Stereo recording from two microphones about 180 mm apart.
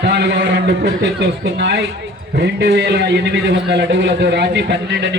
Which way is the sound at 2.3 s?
75° right (ahead or behind).